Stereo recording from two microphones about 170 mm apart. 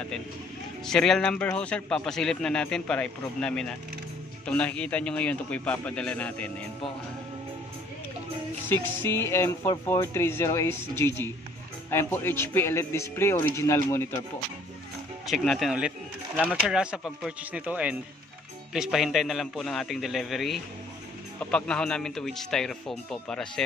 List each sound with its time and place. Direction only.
0.8 s speech: 5° left (ahead or behind)
8.6 s speech: 15° left (ahead or behind)
15.2 s speech: centre (ahead or behind)